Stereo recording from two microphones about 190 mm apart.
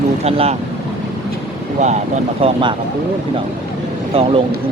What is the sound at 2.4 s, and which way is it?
Speech, 25° right (ahead or behind).